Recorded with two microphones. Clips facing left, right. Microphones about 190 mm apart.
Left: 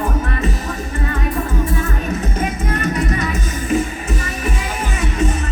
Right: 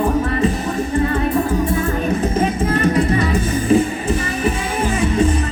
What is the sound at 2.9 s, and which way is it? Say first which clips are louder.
Music: right 4 dB; 30° right (ahead or behind).